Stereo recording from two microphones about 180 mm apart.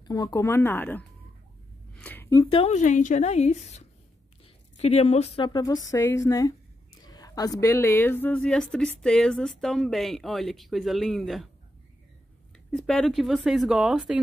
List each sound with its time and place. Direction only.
0.0 s speech: 20° left (ahead or behind)
2.0 s a sound: 10° left (ahead or behind)
2.5 s a woman's voice: 35° left (ahead or behind); by 11.4 s centre (ahead or behind)
12.7 s speech: 5° left (ahead or behind)